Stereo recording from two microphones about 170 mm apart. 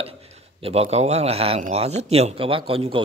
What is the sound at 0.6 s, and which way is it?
A man's voice, 35° right (ahead or behind).